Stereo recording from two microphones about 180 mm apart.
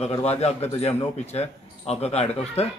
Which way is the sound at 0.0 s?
35° left (ahead or behind).